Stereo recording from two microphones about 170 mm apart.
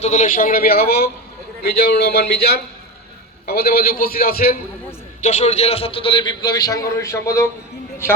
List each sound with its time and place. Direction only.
0.0 s a man's voice: 45° left (ahead or behind); by 4.5 s 65° left (ahead or behind)
5.2 s a man's voice: 40° left (ahead or behind); by 7.4 s 15° left (ahead or behind)